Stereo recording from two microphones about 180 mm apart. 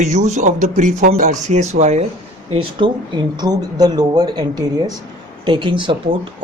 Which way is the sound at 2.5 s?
30° right (ahead or behind).